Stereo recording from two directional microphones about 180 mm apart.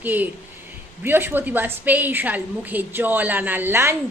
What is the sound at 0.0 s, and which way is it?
Speech, 10° right (ahead or behind).